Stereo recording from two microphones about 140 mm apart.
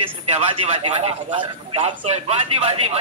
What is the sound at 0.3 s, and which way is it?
Speech, 50° right (ahead or behind).